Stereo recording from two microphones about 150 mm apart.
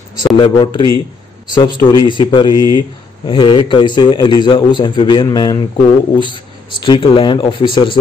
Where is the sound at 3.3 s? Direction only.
30° left (ahead or behind).